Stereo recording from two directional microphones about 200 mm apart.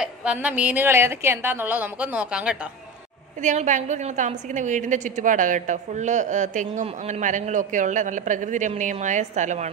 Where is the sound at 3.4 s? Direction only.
40° right (ahead or behind).